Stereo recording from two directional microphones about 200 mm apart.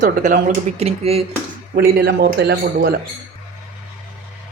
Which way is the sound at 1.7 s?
50° right (ahead or behind).